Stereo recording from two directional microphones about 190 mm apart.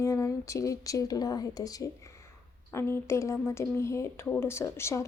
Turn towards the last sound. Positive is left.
turn(degrees=15)  # may be behind; listen again after turning